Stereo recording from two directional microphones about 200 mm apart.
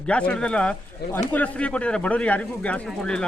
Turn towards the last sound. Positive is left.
turn(degrees=5)  # may be behind; listen again after turning